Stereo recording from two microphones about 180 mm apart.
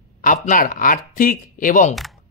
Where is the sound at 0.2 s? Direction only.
50° left (ahead or behind).